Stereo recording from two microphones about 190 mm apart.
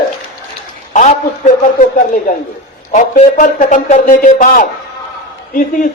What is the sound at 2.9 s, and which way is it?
Speech, 40° left (ahead or behind).